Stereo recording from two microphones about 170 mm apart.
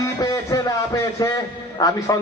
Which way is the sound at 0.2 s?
20° left (ahead or behind).